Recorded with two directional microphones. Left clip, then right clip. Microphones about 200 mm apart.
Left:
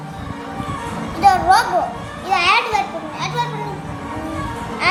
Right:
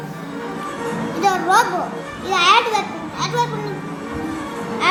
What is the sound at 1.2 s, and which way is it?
A child's voice, 10° left (ahead or behind).